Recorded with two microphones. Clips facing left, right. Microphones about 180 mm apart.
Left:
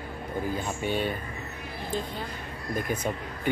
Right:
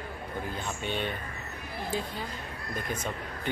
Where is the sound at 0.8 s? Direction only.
5° left (ahead or behind).